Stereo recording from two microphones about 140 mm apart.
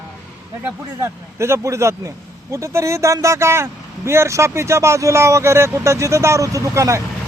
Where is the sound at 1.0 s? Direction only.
20° right (ahead or behind).